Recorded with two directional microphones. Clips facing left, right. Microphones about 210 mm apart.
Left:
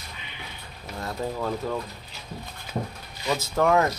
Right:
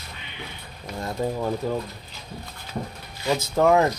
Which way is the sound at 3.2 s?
20° right (ahead or behind).